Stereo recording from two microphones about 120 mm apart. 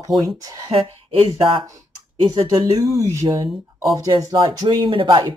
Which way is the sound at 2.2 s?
35° right (ahead or behind).